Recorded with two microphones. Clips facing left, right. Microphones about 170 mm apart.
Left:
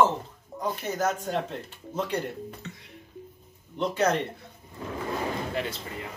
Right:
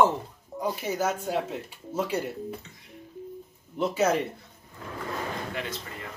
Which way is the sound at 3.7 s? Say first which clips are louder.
Right 1 dB; 5° right (ahead or behind).